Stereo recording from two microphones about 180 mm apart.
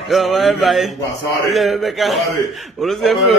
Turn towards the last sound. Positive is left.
turn(degrees=0)  # may be behind; listen again after turning